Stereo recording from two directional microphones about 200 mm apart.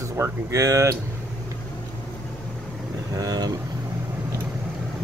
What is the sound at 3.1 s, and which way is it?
Speech, 20° right (ahead or behind).